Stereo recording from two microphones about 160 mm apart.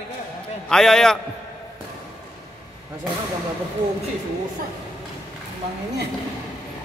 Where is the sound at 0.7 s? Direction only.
5° left (ahead or behind).